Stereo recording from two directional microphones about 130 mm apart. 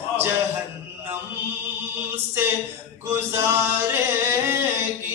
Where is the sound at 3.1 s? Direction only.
20° right (ahead or behind).